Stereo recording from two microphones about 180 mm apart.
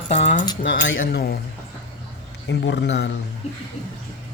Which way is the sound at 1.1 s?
60° left (ahead or behind).